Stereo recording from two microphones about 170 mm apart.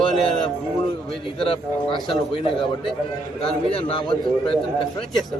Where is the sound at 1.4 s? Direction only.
30° left (ahead or behind).